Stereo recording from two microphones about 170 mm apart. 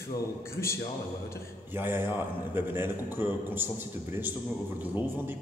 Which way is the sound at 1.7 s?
10° right (ahead or behind).